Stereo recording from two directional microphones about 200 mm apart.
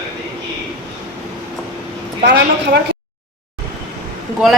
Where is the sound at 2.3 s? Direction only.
55° right (ahead or behind).